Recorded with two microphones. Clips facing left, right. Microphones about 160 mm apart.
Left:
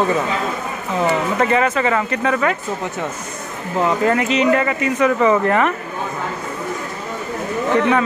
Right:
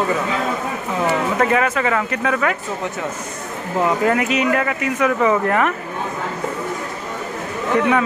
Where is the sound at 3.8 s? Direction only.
10° right (ahead or behind).